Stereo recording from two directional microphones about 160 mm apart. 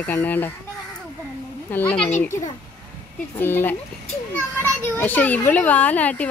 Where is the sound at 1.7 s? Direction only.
10° left (ahead or behind).